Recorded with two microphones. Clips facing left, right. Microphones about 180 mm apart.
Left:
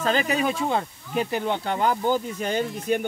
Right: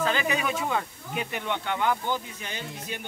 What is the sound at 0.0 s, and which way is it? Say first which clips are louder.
Speech: left 4 dB; 40° left (ahead or behind).